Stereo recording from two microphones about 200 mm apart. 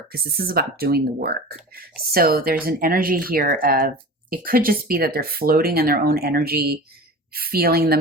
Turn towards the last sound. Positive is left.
turn(degrees=-50)  # may be behind; listen again after turning